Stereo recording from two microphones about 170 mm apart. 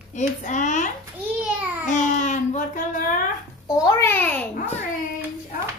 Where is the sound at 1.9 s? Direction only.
45° left (ahead or behind).